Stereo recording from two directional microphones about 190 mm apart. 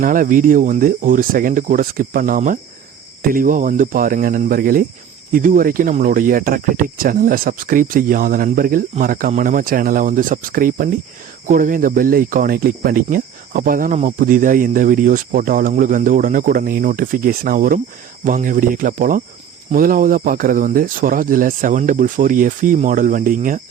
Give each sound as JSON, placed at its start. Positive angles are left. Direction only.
{"t": 0.0, "sound": "speech", "side_deg": -45}